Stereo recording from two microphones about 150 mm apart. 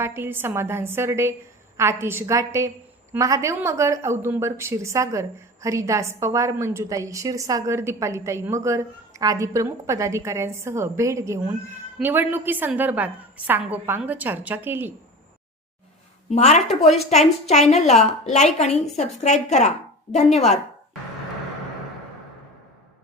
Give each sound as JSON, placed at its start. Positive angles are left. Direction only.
{"t": 0.0, "sound": "a woman's voice", "side_deg": -15}
{"t": 16.3, "sound": "a woman's voice", "side_deg": 50}